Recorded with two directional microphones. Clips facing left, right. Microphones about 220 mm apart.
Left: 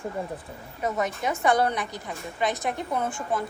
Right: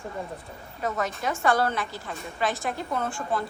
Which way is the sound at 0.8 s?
20° left (ahead or behind).